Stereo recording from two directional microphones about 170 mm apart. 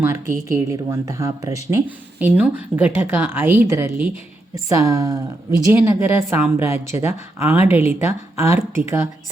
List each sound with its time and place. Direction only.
0.5 s a woman's voice: 20° right (ahead or behind)